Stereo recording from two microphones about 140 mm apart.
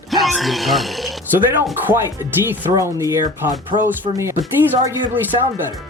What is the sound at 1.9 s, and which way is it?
Speech, 20° right (ahead or behind).